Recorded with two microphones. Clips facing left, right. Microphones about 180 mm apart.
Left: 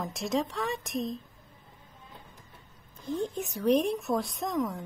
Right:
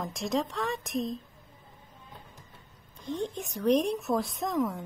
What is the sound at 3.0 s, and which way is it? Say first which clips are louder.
A woman's voice: left 1 dB; 5° left (ahead or behind).